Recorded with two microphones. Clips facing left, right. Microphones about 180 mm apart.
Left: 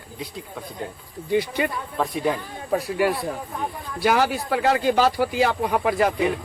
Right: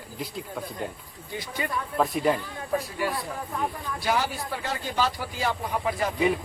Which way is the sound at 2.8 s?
70° left (ahead or behind).